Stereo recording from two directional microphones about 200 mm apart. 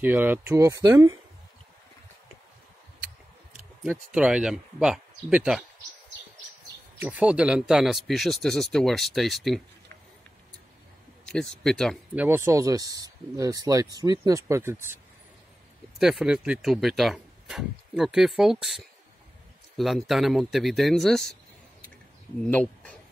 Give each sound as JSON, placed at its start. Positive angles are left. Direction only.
{"t": 0.0, "sound": "speech", "side_deg": -10}
{"t": 3.8, "sound": "speech", "side_deg": -5}
{"t": 7.0, "sound": "speech", "side_deg": -5}
{"t": 11.2, "sound": "speech", "side_deg": 5}
{"t": 12.2, "sound": "speech", "side_deg": -15}
{"t": 16.0, "sound": "speech", "side_deg": -5}
{"t": 22.4, "sound": "speech", "side_deg": 5}